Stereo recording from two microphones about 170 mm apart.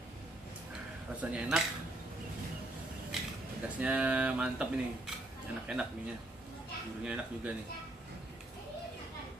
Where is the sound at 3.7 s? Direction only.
10° right (ahead or behind).